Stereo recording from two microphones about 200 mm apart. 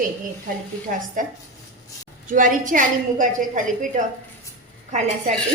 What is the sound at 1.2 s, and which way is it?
A woman's voice, 40° right (ahead or behind).